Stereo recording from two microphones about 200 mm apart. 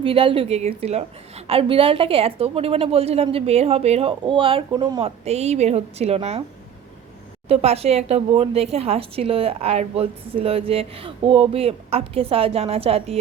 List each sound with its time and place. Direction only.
0.0 s a woman's voice: 25° right (ahead or behind)
7.4 s a woman's voice: 30° right (ahead or behind)